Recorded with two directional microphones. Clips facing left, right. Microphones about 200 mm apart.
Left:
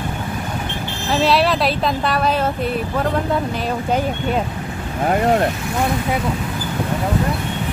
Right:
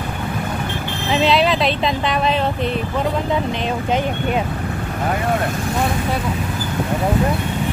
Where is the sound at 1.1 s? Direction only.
5° left (ahead or behind).